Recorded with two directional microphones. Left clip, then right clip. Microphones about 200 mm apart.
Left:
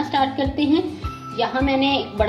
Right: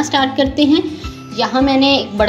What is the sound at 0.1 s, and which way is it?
A woman's voice, 45° right (ahead or behind).